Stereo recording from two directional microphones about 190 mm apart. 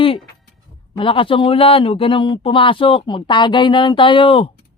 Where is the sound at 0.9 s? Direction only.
25° left (ahead or behind).